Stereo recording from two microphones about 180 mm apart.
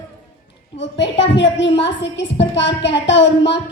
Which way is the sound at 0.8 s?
80° left.